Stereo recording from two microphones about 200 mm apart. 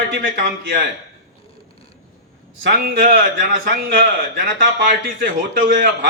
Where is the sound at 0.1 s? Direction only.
45° right (ahead or behind).